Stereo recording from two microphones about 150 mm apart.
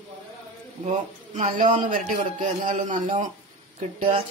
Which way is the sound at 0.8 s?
55° right (ahead or behind).